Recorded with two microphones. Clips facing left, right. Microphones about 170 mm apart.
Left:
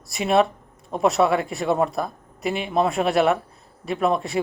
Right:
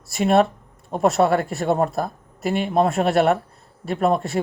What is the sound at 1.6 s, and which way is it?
Speech, 50° right (ahead or behind).